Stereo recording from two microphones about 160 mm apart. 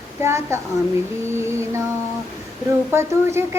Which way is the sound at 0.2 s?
15° right (ahead or behind).